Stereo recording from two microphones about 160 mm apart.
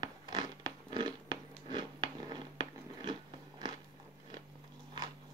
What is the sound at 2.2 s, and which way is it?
Biting, 30° right (ahead or behind).